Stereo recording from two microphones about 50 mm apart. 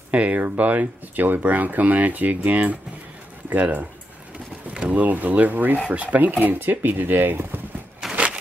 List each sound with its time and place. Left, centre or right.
0.1 s speech: right
4.7 s speech: right
8.0 s walk: centre